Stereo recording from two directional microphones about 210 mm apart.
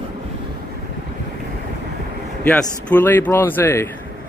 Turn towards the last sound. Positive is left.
turn(degrees=10)  # may be behind; listen again after turning